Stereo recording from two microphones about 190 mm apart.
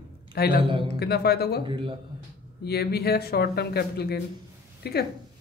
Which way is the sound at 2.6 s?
55° left (ahead or behind).